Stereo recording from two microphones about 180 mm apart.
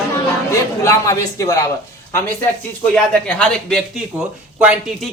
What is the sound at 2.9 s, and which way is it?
Speech, 5° left (ahead or behind).